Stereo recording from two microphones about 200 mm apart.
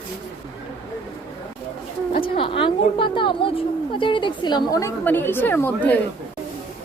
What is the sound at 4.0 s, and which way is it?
A woman's voice, 25° left (ahead or behind).